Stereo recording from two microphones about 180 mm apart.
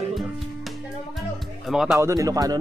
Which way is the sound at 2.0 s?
20° right (ahead or behind).